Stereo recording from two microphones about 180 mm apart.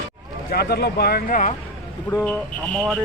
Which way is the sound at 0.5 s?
65° left (ahead or behind).